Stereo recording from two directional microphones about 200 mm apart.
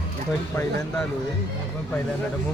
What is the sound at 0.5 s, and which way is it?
Speech, 10° left (ahead or behind).